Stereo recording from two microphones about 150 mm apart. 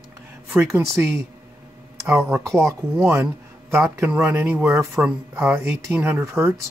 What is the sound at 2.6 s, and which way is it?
Speech, 15° right (ahead or behind).